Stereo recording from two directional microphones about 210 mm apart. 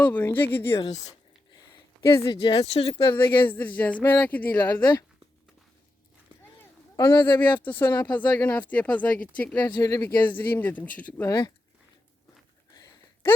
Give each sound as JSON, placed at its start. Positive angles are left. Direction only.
{"t": 0.0, "sound": "speech", "side_deg": 10}
{"t": 0.8, "sound": "speech", "side_deg": 30}
{"t": 2.1, "sound": "speech", "side_deg": 20}
{"t": 3.4, "sound": "speech", "side_deg": 10}
{"t": 4.5, "sound": "speech", "side_deg": 20}
{"t": 6.9, "sound": "speech", "side_deg": 20}
{"t": 7.3, "sound": "speech", "side_deg": 10}
{"t": 9.7, "sound": "speech", "side_deg": 15}
{"t": 12.7, "sound": "a sound", "side_deg": 15}